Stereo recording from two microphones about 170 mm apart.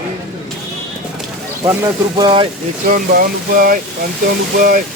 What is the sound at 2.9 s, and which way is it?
Speech, 55° right (ahead or behind).